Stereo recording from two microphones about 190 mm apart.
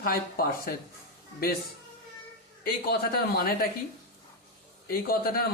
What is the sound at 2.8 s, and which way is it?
Speech, 55° left (ahead or behind).